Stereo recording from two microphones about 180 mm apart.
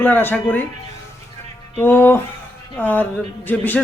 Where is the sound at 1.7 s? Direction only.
10° left (ahead or behind).